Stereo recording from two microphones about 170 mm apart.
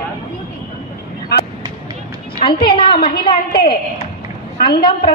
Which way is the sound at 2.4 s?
30° left (ahead or behind).